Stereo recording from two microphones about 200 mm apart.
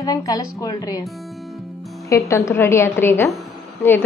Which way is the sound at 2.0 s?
15° left (ahead or behind).